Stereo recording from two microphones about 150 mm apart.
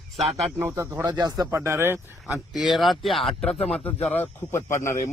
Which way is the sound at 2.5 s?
Centre (ahead or behind).